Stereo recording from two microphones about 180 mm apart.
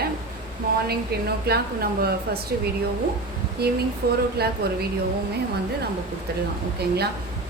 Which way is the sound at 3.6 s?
60° right (ahead or behind).